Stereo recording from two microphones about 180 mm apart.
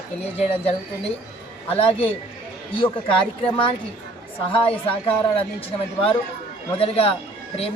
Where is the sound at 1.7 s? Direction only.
30° left (ahead or behind).